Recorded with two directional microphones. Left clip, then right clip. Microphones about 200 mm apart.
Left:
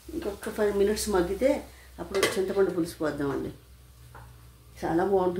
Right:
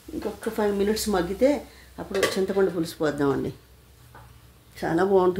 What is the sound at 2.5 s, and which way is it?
Speech, 45° right (ahead or behind).